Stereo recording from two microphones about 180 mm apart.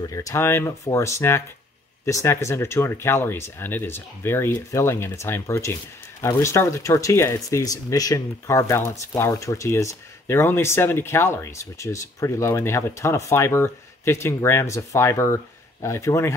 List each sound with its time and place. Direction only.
0.0 s speech: 20° left (ahead or behind)